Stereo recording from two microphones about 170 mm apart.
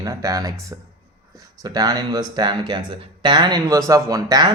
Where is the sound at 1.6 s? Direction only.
20° right (ahead or behind).